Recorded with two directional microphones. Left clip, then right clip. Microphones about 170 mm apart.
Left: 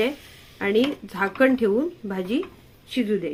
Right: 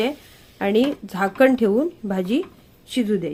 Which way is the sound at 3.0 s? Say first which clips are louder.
Right 2 dB; 75° right (ahead or behind).